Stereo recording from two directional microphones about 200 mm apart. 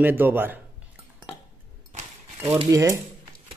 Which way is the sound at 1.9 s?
30° right (ahead or behind).